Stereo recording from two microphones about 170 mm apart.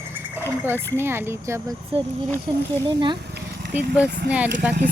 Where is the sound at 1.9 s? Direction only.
35° right (ahead or behind).